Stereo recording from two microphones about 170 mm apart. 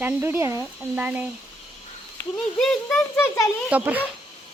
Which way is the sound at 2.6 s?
5° left (ahead or behind).